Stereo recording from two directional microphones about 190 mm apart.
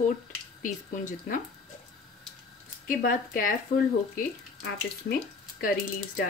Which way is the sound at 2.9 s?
45° left (ahead or behind).